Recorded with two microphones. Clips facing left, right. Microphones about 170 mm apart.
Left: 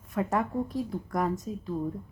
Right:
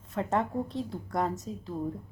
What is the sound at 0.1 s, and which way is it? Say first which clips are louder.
A woman's voice: left 1 dB; 25° right (ahead or behind).